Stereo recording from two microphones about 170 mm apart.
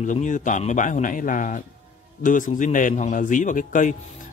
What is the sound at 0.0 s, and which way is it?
Speech, 45° left (ahead or behind).